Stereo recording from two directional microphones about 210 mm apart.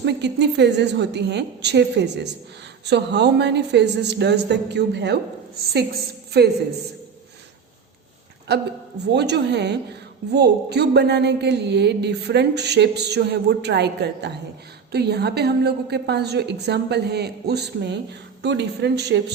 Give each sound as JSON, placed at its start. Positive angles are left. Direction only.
{"t": 0.0, "sound": "a woman's voice", "side_deg": -55}
{"t": 8.5, "sound": "a woman's voice", "side_deg": -50}